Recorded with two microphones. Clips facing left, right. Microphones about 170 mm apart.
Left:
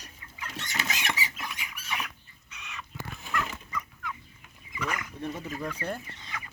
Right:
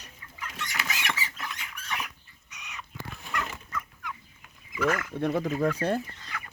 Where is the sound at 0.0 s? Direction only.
30° left (ahead or behind); by 1.5 s 15° left (ahead or behind).